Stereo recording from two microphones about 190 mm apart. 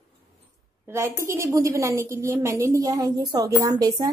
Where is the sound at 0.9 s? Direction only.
15° right (ahead or behind).